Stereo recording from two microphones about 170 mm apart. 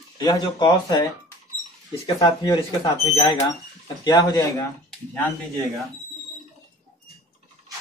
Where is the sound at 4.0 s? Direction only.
25° left (ahead or behind).